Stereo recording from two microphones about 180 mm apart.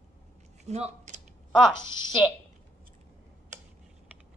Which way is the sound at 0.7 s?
35° right (ahead or behind).